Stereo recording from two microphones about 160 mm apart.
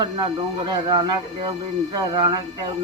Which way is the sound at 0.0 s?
30° right (ahead or behind).